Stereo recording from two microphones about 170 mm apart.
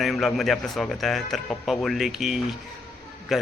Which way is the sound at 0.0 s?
Centre (ahead or behind).